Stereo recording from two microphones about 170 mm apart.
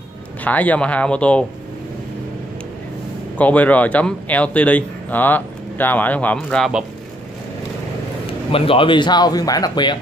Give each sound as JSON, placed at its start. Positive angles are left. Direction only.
{"t": 0.4, "sound": "a man's voice", "side_deg": 10}
{"t": 3.3, "sound": "a man's voice", "side_deg": 10}
{"t": 8.5, "sound": "speech", "side_deg": 35}